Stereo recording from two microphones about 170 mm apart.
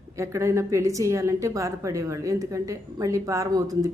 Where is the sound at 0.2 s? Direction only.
15° right (ahead or behind).